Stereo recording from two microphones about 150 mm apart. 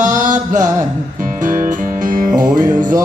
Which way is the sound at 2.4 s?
60° right (ahead or behind).